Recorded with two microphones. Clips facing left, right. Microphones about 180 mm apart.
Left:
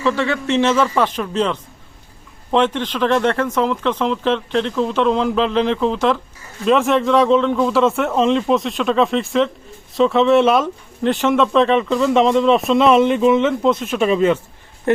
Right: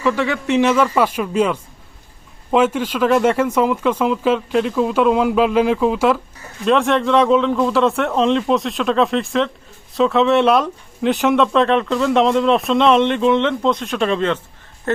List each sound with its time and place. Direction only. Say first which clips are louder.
0.0 s speech: even; 15° right (ahead or behind); by 15.0 s 15° left (ahead or behind)